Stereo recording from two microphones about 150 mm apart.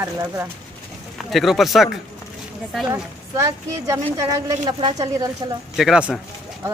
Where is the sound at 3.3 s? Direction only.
20° right (ahead or behind).